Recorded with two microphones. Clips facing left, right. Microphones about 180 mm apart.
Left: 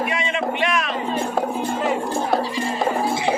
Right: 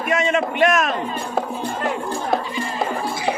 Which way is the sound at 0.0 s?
45° right (ahead or behind).